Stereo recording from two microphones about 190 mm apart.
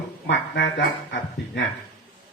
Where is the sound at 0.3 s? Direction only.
70° left (ahead or behind).